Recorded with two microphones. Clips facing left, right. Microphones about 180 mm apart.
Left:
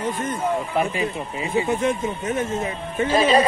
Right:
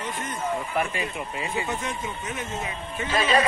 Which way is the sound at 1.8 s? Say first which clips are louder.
Left 9 dB; 50° left (ahead or behind).